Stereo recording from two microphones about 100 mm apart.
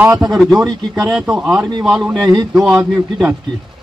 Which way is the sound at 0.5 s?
40° right (ahead or behind).